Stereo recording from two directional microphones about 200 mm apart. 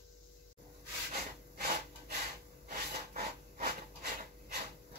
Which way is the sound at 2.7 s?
50° right (ahead or behind).